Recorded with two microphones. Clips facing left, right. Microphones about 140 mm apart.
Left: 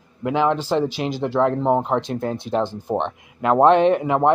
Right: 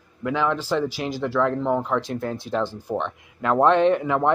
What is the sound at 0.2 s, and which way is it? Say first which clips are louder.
Speech: left 4 dB; 25° left (ahead or behind).